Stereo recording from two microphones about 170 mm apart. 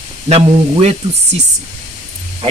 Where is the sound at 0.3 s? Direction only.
35° right (ahead or behind).